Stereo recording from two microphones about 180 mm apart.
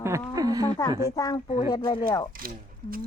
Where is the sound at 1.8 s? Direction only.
20° left (ahead or behind).